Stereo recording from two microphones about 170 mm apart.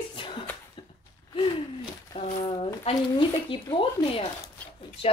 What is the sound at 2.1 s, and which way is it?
A woman's voice, 35° left (ahead or behind).